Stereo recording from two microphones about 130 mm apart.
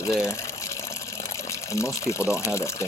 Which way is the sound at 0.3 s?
25° left (ahead or behind).